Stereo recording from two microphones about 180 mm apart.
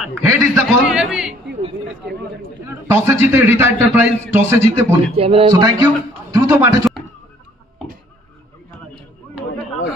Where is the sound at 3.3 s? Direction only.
10° right (ahead or behind).